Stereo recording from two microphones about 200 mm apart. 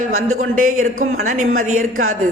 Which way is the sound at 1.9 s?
90° right.